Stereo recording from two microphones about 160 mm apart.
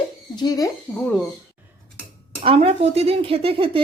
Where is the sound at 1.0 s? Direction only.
5° left (ahead or behind).